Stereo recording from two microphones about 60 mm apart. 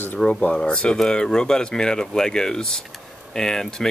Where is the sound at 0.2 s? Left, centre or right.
Centre.